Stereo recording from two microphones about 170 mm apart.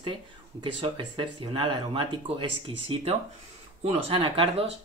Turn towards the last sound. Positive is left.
turn(degrees=-30)  # may be behind; listen again after turning